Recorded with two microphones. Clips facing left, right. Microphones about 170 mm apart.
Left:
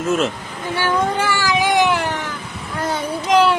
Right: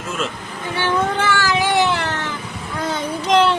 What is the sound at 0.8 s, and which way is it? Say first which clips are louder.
Cat: even; 10° left (ahead or behind).